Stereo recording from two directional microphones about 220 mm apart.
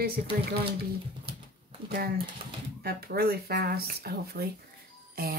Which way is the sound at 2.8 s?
45° right (ahead or behind).